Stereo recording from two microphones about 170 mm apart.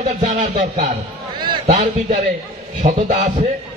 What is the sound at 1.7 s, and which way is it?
A man's voice, 40° right (ahead or behind).